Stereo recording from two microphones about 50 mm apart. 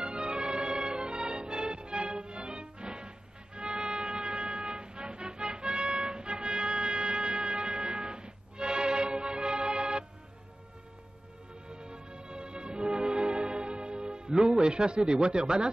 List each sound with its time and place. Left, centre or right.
0.0 s music: centre
11.7 s music: centre